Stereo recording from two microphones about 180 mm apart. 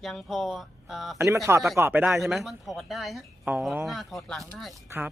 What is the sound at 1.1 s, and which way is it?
Speech, 15° right (ahead or behind).